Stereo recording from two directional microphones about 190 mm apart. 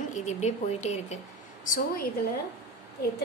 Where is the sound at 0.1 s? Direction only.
35° left (ahead or behind).